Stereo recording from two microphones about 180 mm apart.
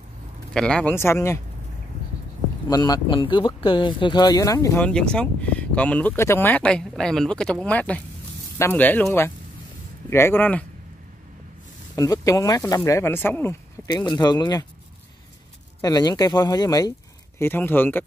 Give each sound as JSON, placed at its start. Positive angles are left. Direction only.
{"t": 0.5, "sound": "speech", "side_deg": 5}
{"t": 2.7, "sound": "speech", "side_deg": 20}
{"t": 4.8, "sound": "speech", "side_deg": 5}
{"t": 11.9, "sound": "speech", "side_deg": 20}
{"t": 15.8, "sound": "speech", "side_deg": 20}